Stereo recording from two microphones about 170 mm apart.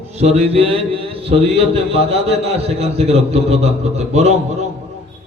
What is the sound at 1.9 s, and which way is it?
A man's voice, 35° right (ahead or behind).